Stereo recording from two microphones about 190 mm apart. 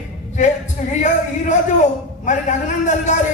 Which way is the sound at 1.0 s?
40° left (ahead or behind).